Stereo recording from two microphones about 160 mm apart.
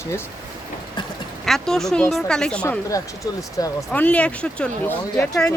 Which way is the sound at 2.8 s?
20° left (ahead or behind).